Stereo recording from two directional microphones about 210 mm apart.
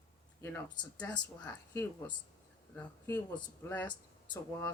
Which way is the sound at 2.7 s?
10° left (ahead or behind).